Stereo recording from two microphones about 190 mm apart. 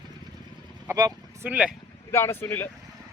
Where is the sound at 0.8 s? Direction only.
20° right (ahead or behind).